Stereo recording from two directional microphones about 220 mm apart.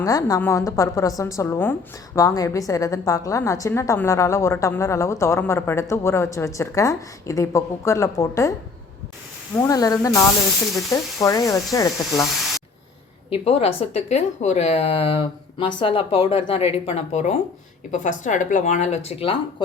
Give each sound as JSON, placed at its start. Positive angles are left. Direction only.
{"t": 0.0, "sound": "a woman's voice", "side_deg": 15}
{"t": 9.6, "sound": "a woman's voice", "side_deg": 15}
{"t": 13.3, "sound": "speech", "side_deg": 25}